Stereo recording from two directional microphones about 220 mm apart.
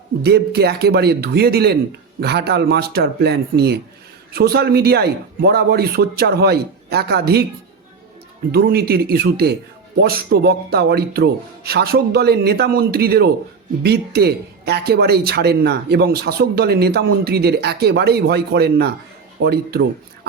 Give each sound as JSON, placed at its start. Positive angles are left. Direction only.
{"t": 0.2, "sound": "speech", "side_deg": -45}
{"t": 8.5, "sound": "speech", "side_deg": -45}